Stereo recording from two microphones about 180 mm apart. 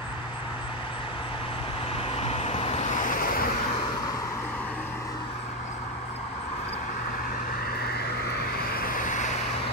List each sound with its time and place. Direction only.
2.1 s vehicle: 35° left (ahead or behind); by 3.5 s 50° left (ahead or behind)
8.5 s vehicle: 55° left (ahead or behind)